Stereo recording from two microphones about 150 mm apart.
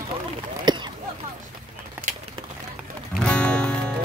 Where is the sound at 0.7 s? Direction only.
30° right (ahead or behind).